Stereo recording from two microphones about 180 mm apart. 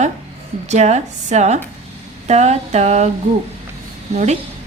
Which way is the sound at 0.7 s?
40° right (ahead or behind).